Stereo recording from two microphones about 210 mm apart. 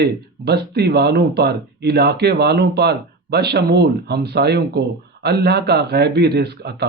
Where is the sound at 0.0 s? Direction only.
50° right (ahead or behind).